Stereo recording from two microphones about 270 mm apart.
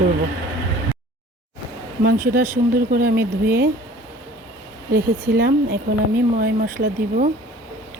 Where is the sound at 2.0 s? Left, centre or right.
Right.